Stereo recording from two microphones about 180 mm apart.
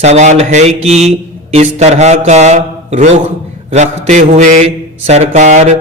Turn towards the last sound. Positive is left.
turn(degrees=-40)  # may be behind; listen again after turning